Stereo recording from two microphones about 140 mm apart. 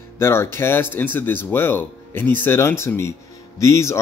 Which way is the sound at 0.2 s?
15° left (ahead or behind).